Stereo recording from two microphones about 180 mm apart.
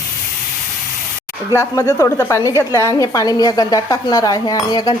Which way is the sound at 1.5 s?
15° left (ahead or behind).